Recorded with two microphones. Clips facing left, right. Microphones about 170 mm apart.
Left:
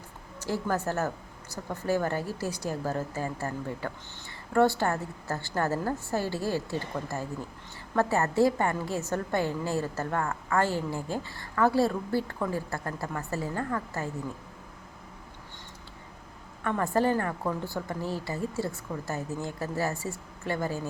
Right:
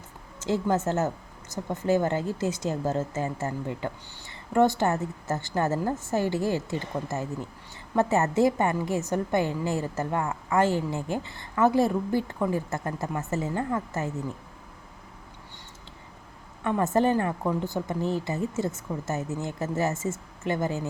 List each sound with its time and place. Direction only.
0.3 s a woman's voice: 20° right (ahead or behind)
16.6 s a woman's voice: 20° right (ahead or behind)